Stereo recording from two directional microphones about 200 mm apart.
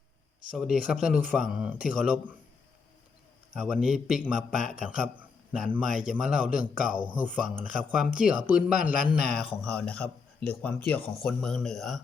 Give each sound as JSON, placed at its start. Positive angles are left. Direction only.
{"t": 0.5, "sound": "a man's voice", "side_deg": -5}
{"t": 3.5, "sound": "a man's voice", "side_deg": -5}
{"t": 5.7, "sound": "a man's voice", "side_deg": -5}